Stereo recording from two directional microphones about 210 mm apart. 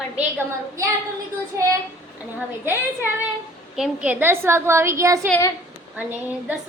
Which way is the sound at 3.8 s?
5° right (ahead or behind).